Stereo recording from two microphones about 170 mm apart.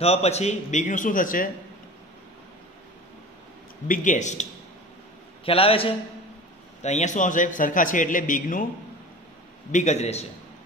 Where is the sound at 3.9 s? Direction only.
45° left (ahead or behind).